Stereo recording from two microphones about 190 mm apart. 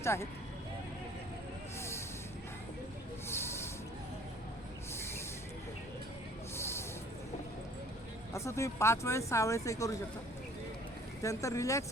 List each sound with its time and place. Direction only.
0.0 s speech: 15° left (ahead or behind)
3.2 s snake: 15° left (ahead or behind)
6.6 s a sound: 15° left (ahead or behind)
8.3 s speech: 15° left (ahead or behind)
11.2 s speech: 15° left (ahead or behind)